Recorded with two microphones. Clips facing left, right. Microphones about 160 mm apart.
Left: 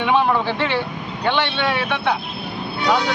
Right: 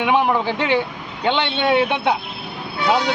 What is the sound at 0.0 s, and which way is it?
Speech, 15° right (ahead or behind).